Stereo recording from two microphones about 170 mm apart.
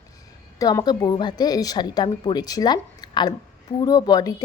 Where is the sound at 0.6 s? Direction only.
20° left (ahead or behind).